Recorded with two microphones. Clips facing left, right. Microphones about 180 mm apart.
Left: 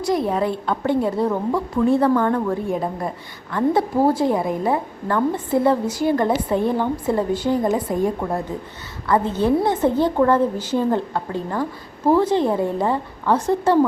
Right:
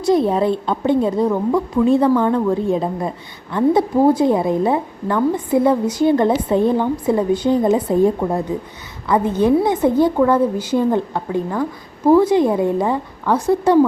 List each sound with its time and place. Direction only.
0.0 s a woman's voice: 25° right (ahead or behind); by 13.7 s 10° right (ahead or behind)